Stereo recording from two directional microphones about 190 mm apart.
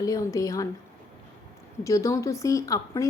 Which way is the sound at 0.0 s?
15° left (ahead or behind).